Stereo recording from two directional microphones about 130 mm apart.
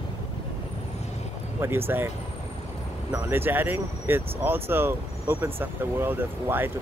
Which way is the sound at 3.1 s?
15° right (ahead or behind).